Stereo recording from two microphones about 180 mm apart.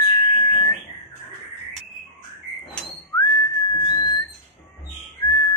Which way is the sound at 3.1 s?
20° left (ahead or behind).